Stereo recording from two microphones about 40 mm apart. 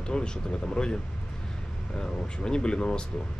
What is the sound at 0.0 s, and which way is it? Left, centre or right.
Speech, left.